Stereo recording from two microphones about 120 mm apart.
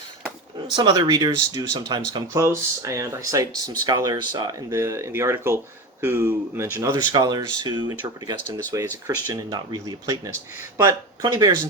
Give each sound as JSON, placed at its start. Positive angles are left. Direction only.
{"t": 0.8, "sound": "speech", "side_deg": -35}
{"t": 2.2, "sound": "speech", "side_deg": -25}
{"t": 4.7, "sound": "speech", "side_deg": -25}
{"t": 7.1, "sound": "speech", "side_deg": -35}
{"t": 8.5, "sound": "speech", "side_deg": -25}